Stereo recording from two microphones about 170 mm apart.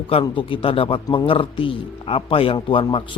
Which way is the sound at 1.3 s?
30° left (ahead or behind).